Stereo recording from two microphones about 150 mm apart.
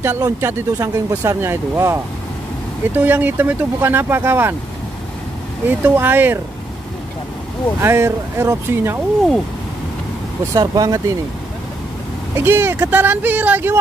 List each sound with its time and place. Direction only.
0.0 s speech: 15° right (ahead or behind)
5.7 s speech: 15° right (ahead or behind)
7.8 s speech: 15° right (ahead or behind)
10.5 s speech: 25° right (ahead or behind)
12.4 s speech: 15° right (ahead or behind)